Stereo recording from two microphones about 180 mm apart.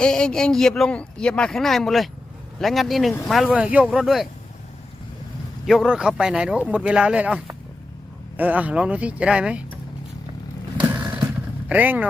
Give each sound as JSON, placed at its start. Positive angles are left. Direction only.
{"t": 0.0, "sound": "speech", "side_deg": 5}
{"t": 5.6, "sound": "speech", "side_deg": 0}
{"t": 10.8, "sound": "vehicle", "side_deg": -10}
{"t": 11.7, "sound": "speech", "side_deg": -10}